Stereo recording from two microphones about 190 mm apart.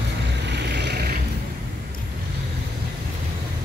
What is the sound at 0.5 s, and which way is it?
Vehicle, 65° right (ahead or behind).